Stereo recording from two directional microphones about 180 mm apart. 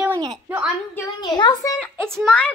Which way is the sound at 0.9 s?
25° left (ahead or behind).